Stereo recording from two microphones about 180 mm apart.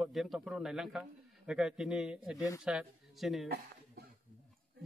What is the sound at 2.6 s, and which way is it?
Speech, centre (ahead or behind).